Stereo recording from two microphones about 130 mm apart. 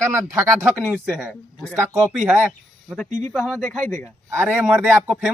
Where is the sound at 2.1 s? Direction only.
10° right (ahead or behind).